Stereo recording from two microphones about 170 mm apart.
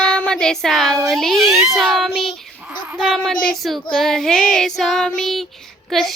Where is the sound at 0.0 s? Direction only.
5° left (ahead or behind).